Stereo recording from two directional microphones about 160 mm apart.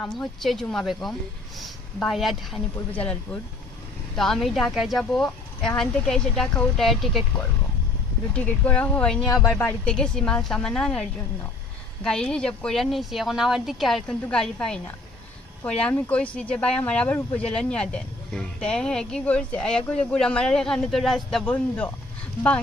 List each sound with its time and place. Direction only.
0.0 s a woman's voice: 5° left (ahead or behind)
4.2 s a woman's voice: centre (ahead or behind)
8.4 s speech: 10° left (ahead or behind)
9.3 s speech: 20° left (ahead or behind)
9.6 s a woman's voice: 5° left (ahead or behind)
12.0 s a woman's voice: 5° left (ahead or behind)